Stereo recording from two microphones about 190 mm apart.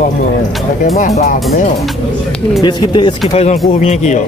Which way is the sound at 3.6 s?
35° left (ahead or behind).